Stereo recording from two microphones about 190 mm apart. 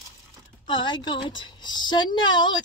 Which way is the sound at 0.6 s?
25° left (ahead or behind).